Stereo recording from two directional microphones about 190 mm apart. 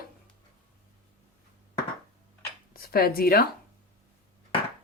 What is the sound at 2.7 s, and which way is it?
Speech, 55° left (ahead or behind).